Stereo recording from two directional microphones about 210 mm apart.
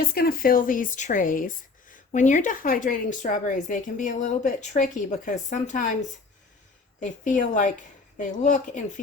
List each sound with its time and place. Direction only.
0.1 s speech: 45° left (ahead or behind)
7.0 s speech: 35° left (ahead or behind)